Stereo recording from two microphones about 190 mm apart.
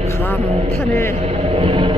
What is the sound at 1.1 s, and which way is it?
Speech, 35° right (ahead or behind).